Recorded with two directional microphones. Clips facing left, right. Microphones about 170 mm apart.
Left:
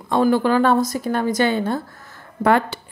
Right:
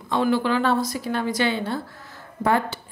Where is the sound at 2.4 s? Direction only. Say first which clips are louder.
Left 4 dB; 70° left (ahead or behind).